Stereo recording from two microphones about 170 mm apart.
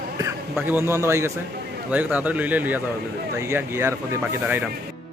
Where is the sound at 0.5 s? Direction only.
10° right (ahead or behind).